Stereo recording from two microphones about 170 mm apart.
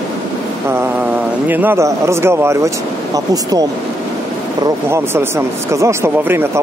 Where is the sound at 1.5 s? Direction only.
10° right (ahead or behind).